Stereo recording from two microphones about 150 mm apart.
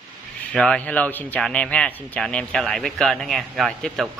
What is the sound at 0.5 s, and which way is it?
Speech, 5° left (ahead or behind).